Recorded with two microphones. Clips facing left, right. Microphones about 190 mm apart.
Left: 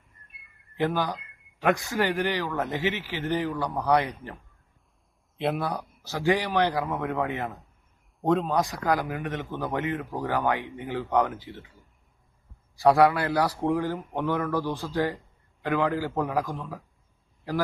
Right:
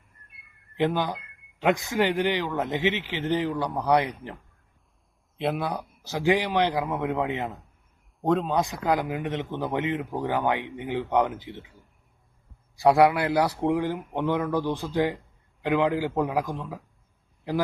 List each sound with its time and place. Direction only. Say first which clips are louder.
0.8 s speech: right 1 dB; 20° right (ahead or behind)
5.4 s speech: even; centre (ahead or behind)
6.0 s speech: right 2 dB; 15° right (ahead or behind)
8.2 s speech: even; centre (ahead or behind)
8.6 s speech: right 1 dB; 20° right (ahead or behind)
12.7 s speech: right 1 dB; 20° right (ahead or behind)